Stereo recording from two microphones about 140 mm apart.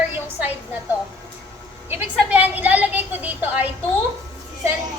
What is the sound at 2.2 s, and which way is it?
A woman's voice, 10° right (ahead or behind).